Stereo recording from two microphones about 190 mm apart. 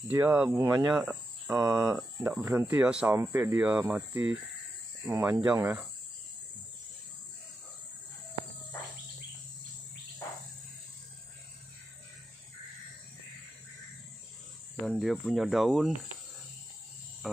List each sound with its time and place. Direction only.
0.1 s speech: 15° right (ahead or behind)
0.9 s speech: 10° right (ahead or behind)
14.9 s speech: centre (ahead or behind)